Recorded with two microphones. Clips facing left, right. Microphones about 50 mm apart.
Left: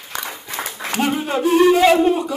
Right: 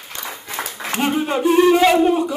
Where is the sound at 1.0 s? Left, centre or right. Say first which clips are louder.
Right 2 dB; centre.